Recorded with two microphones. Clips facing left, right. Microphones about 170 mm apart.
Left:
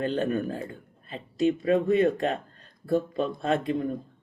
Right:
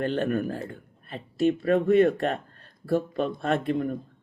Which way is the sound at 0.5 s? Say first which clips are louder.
Even; 15° left (ahead or behind).